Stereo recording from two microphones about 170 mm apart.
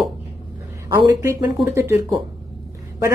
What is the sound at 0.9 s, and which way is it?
A woman's voice, 20° right (ahead or behind).